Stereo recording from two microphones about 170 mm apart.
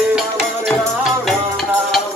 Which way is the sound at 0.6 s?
Centre (ahead or behind).